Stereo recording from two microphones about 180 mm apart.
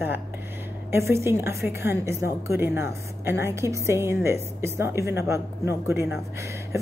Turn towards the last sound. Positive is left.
turn(degrees=-15)  # may be behind; listen again after turning